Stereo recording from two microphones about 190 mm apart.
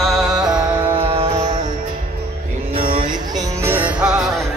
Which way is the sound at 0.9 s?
30° right (ahead or behind).